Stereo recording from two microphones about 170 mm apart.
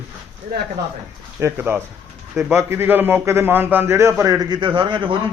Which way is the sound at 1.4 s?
10° right (ahead or behind).